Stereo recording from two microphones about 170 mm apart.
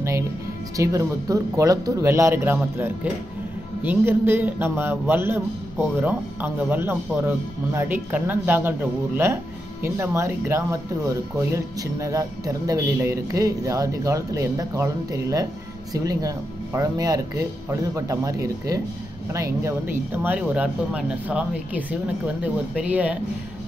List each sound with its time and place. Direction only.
0.7 s a man's voice: 20° right (ahead or behind)